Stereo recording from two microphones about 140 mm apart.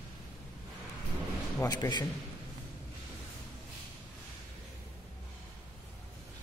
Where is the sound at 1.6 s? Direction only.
25° left (ahead or behind).